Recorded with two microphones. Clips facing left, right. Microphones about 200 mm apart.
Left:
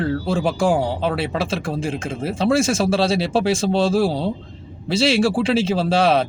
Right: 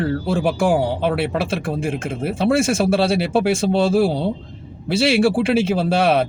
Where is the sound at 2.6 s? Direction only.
55° right (ahead or behind).